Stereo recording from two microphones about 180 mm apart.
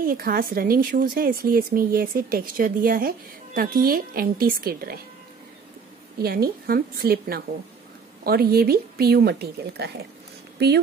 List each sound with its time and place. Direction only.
0.0 s speech: 55° right (ahead or behind)
6.1 s speech: 60° right (ahead or behind)